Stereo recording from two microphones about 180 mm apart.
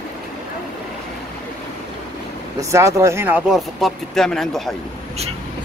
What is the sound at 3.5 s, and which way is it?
Speech, centre (ahead or behind).